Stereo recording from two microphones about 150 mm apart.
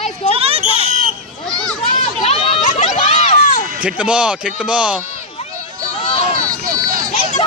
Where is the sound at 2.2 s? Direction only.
45° left (ahead or behind).